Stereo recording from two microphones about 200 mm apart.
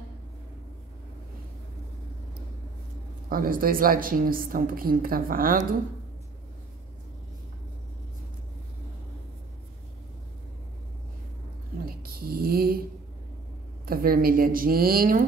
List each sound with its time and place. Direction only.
3.3 s a woman's voice: 45° right (ahead or behind)
11.8 s a sound: 50° right (ahead or behind)
13.8 s a woman's voice: 45° right (ahead or behind)